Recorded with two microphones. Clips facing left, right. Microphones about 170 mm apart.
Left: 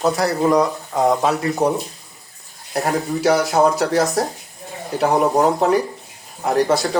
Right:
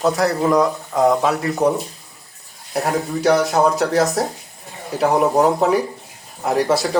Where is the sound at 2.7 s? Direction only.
Centre (ahead or behind).